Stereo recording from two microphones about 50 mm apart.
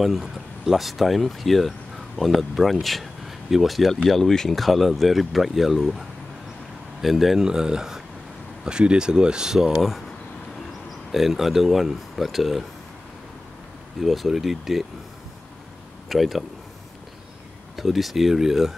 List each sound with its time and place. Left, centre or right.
0.0 s speech: centre
11.1 s speech: centre
13.9 s speech: centre
16.1 s speech: centre
17.7 s speech: centre